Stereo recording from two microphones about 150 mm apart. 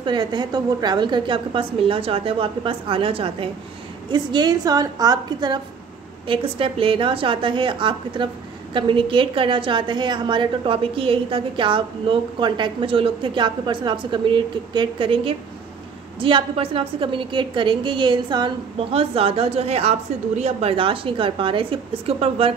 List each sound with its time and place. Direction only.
0.0 s a woman's voice: 30° right (ahead or behind)